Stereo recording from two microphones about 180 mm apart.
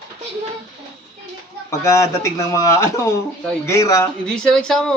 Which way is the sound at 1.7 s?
15° left (ahead or behind).